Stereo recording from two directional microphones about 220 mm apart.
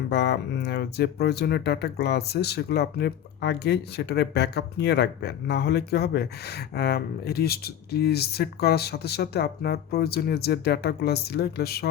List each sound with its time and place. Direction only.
0.1 s speech: 50° left (ahead or behind)